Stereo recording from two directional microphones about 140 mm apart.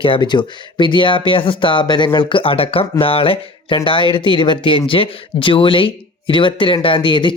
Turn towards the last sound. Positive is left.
turn(degrees=35)  # may be behind; listen again after turning